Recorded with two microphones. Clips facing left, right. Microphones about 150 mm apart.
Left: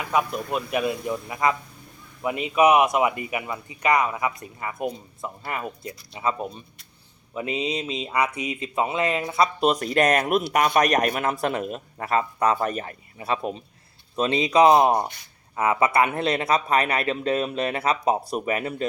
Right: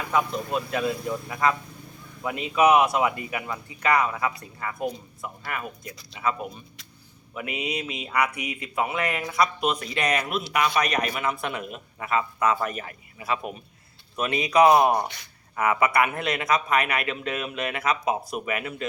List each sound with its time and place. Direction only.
0.1 s speech: 20° left (ahead or behind)
15.0 s speech: 90° right
15.5 s speech: 25° left (ahead or behind)